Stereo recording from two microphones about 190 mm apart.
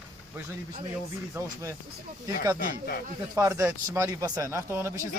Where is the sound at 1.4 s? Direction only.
15° right (ahead or behind).